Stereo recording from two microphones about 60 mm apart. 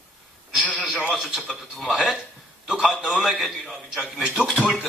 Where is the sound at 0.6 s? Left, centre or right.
Left.